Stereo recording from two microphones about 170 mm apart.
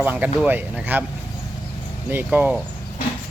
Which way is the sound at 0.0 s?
10° right (ahead or behind).